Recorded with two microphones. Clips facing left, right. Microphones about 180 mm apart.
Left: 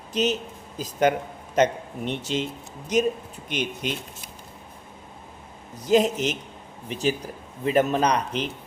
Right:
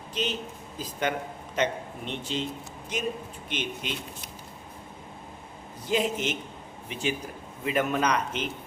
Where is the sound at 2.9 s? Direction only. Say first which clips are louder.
Left 11 dB; 40° left (ahead or behind).